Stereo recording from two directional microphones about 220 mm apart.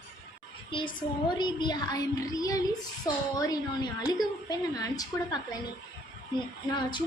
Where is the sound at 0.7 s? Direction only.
20° left (ahead or behind).